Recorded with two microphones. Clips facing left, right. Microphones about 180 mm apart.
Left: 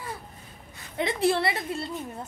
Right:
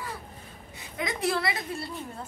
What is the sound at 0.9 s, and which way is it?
A woman's voice, 30° left (ahead or behind).